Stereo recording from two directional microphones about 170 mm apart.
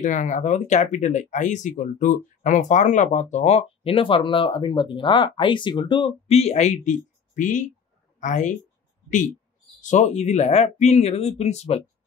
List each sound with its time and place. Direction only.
0.0 s speech: 45° left (ahead or behind)
9.8 s speech: 45° left (ahead or behind)